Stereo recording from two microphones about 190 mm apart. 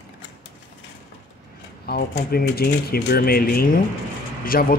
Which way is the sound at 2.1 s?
55° left (ahead or behind).